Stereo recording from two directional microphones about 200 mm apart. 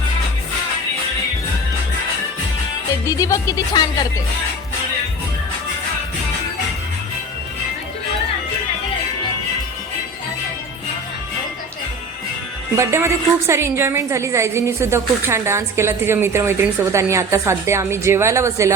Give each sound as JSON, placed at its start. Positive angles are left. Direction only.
{"t": 3.1, "sound": "speech", "side_deg": 15}
{"t": 12.7, "sound": "a woman's voice", "side_deg": -15}